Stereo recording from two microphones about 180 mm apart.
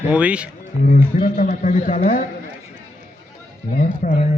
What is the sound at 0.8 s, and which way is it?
A man's voice, 50° left (ahead or behind).